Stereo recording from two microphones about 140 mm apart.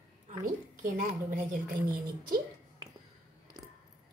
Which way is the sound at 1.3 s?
80° right.